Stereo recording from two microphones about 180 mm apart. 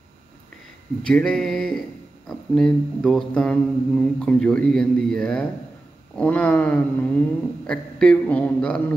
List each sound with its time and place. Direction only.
1.0 s mantra: 5° left (ahead or behind)
6.1 s speech: 10° left (ahead or behind)
7.6 s mantra: 5° left (ahead or behind)